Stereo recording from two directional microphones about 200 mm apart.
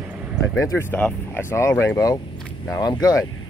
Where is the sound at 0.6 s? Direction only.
10° left (ahead or behind).